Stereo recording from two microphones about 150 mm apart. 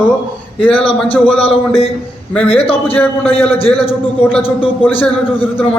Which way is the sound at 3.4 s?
40° left (ahead or behind).